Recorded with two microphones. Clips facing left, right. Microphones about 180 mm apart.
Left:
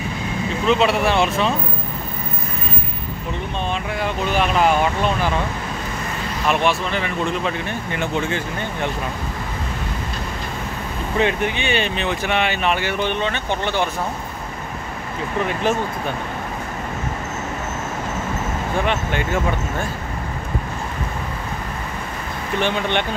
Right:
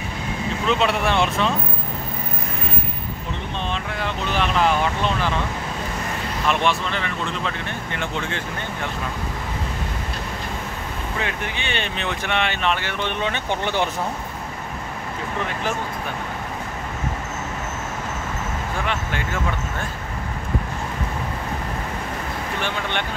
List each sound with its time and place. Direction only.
0.7 s speech: 5° left (ahead or behind)
3.7 s speech: 10° left (ahead or behind)
6.4 s speech: 5° left (ahead or behind)
11.1 s speech: 20° left (ahead or behind)
11.7 s speech: 5° left (ahead or behind)
18.9 s speech: 20° left (ahead or behind)
22.6 s speech: 20° left (ahead or behind)